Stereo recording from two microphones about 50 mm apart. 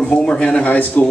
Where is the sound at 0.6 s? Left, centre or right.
Left.